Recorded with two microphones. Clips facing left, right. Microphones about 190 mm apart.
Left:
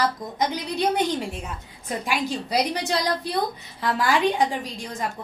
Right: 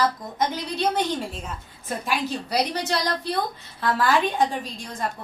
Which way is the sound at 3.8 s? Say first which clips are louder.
Right 1 dB; 15° left (ahead or behind).